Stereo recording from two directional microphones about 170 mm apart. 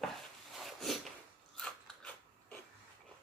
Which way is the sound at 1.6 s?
5° left (ahead or behind).